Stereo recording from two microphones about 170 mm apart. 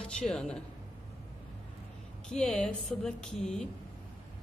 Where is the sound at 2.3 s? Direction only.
5° left (ahead or behind).